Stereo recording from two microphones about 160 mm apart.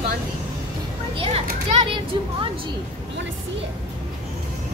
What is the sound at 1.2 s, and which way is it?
Speech, 35° right (ahead or behind).